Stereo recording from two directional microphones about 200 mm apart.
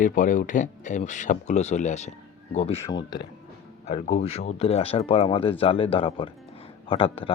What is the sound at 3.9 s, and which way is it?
Speech, 50° left (ahead or behind).